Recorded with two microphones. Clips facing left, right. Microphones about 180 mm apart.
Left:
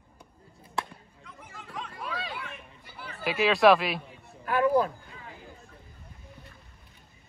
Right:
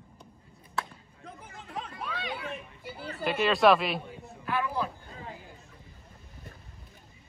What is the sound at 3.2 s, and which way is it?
Speech, centre (ahead or behind).